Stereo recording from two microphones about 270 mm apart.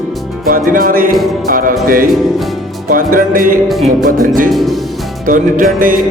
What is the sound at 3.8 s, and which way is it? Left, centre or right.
Music, right.